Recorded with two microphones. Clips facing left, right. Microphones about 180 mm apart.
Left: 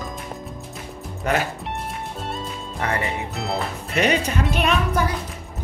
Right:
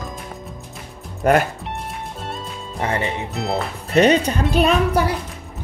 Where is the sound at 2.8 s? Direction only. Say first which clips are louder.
Right 2 dB; 25° right (ahead or behind).